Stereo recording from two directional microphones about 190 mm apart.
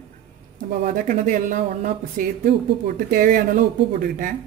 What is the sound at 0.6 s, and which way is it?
Speech, 45° right (ahead or behind).